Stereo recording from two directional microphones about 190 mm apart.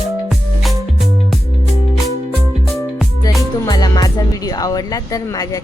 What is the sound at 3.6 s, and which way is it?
A woman's voice, 20° left (ahead or behind).